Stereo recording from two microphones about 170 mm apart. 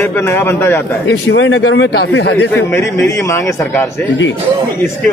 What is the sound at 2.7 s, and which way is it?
A man's voice, 15° left (ahead or behind).